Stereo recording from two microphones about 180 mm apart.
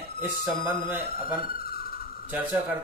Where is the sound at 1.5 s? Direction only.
55° left (ahead or behind).